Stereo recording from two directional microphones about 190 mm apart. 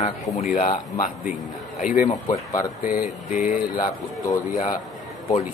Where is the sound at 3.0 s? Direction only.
45° left (ahead or behind).